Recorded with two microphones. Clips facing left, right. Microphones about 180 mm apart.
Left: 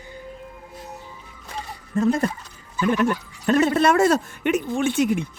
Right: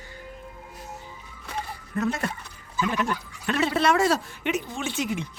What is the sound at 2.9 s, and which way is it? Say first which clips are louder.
Speech: left 10 dB; 50° left (ahead or behind).